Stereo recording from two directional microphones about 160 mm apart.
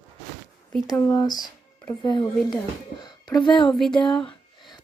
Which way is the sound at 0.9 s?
25° left (ahead or behind).